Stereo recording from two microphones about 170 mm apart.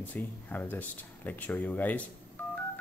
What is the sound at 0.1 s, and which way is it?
Speech, 10° left (ahead or behind).